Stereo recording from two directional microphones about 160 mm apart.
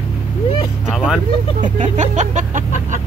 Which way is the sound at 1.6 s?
50° right (ahead or behind).